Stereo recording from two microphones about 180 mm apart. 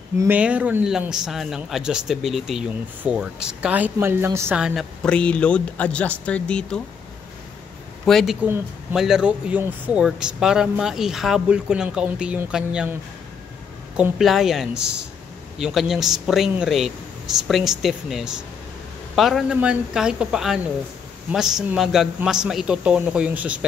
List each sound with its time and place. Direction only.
0.2 s speech: 10° right (ahead or behind)
4.6 s speech: 5° right (ahead or behind)
8.0 s speech: centre (ahead or behind)
13.9 s speech: 5° right (ahead or behind)